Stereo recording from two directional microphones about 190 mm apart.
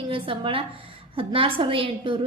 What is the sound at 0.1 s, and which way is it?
A woman's voice, 30° right (ahead or behind).